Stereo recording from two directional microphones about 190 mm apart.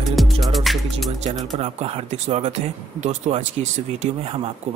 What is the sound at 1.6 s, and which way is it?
Speech, 30° right (ahead or behind).